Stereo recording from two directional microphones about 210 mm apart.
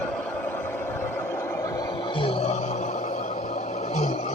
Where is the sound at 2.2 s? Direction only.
25° left (ahead or behind).